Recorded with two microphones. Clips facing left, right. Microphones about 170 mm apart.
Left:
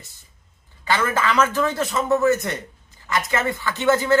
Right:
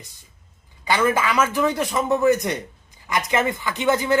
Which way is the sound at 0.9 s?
15° right (ahead or behind).